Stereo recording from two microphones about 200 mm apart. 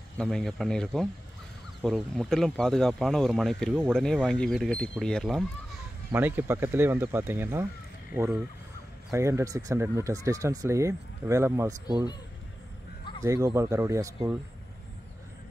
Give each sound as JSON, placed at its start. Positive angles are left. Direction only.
{"t": 0.2, "sound": "speech", "side_deg": 0}
{"t": 6.1, "sound": "speech", "side_deg": -10}
{"t": 11.9, "sound": "speech", "side_deg": 20}
{"t": 13.2, "sound": "speech", "side_deg": -15}